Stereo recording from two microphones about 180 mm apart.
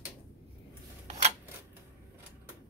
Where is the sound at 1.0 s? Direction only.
35° right (ahead or behind).